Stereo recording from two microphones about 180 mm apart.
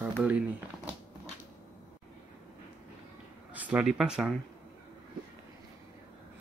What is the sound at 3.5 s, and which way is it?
Speech, 5° right (ahead or behind).